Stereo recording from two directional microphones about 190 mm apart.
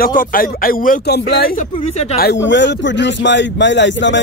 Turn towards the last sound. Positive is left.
turn(degrees=70)  # may be behind; listen again after turning